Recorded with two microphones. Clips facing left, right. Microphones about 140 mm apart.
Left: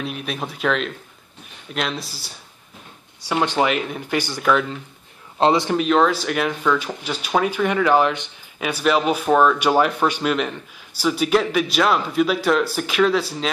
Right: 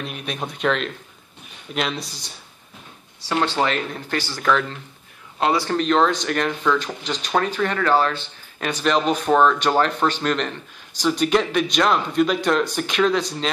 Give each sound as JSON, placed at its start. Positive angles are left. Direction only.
{"t": 0.0, "sound": "a man's voice", "side_deg": 0}
{"t": 5.4, "sound": "speech", "side_deg": 20}
{"t": 5.8, "sound": "a man's voice", "side_deg": 5}